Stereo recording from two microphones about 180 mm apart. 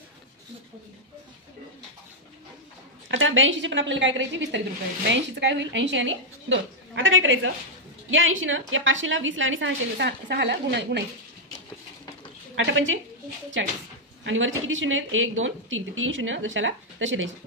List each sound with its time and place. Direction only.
3.1 s a woman's voice: 90° right; by 11.1 s 70° right (ahead or behind)
12.5 s speech: 90° right